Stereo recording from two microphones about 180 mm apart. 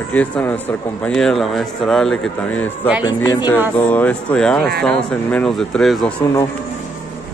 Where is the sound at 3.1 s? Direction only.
25° left (ahead or behind).